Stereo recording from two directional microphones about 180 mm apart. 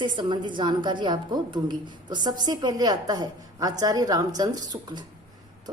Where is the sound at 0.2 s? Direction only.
25° right (ahead or behind).